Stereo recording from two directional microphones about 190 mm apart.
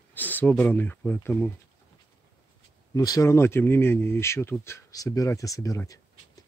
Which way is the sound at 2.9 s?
20° left (ahead or behind).